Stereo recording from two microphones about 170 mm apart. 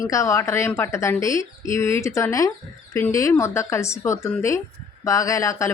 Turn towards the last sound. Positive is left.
turn(degrees=20)  # may be behind; listen again after turning